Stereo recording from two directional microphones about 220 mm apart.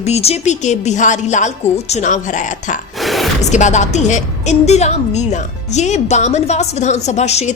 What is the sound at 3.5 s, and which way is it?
A woman's voice, 35° left (ahead or behind).